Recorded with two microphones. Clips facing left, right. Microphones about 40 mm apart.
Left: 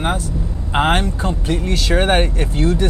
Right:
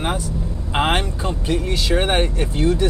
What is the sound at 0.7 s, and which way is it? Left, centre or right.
Speech, centre.